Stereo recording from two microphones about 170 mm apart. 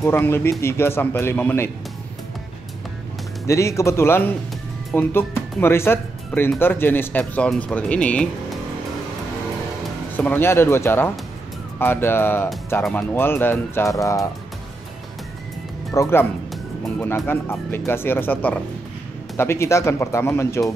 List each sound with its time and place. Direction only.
0.0 s speech: 15° left (ahead or behind)
3.4 s speech: 15° left (ahead or behind)
10.1 s speech: 10° left (ahead or behind)
15.9 s speech: 15° left (ahead or behind)